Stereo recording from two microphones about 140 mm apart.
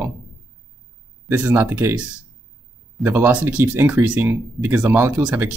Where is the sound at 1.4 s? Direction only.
15° right (ahead or behind).